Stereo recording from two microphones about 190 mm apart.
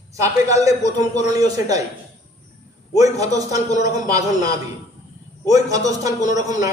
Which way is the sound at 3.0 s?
20° right (ahead or behind).